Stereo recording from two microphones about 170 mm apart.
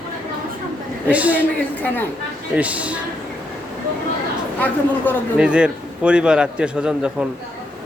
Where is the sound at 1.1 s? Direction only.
10° right (ahead or behind).